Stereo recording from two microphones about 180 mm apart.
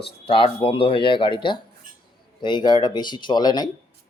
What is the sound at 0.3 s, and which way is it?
Speech, 30° left (ahead or behind).